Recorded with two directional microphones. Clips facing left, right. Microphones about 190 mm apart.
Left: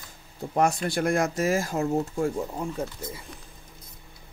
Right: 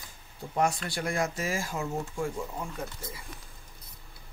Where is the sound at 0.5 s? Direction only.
50° left (ahead or behind).